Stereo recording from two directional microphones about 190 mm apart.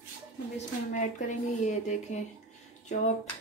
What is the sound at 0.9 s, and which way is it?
Speech, 40° left (ahead or behind).